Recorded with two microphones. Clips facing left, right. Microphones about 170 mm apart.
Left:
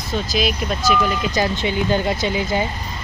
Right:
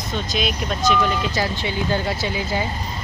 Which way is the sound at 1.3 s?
20° left (ahead or behind).